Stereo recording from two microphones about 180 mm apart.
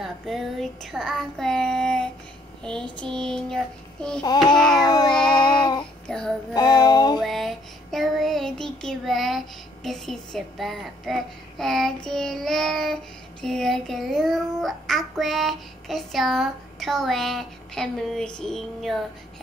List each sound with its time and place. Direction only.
0.0 s a child's voice: centre (ahead or behind)
4.2 s child singing: 25° left (ahead or behind)
4.6 s a child's voice: 5° left (ahead or behind)
4.8 s child singing: 25° left (ahead or behind)
6.0 s child singing: 5° left (ahead or behind)
6.5 s music: 20° left (ahead or behind)
7.2 s child singing: centre (ahead or behind)
9.8 s a child's voice: centre (ahead or behind)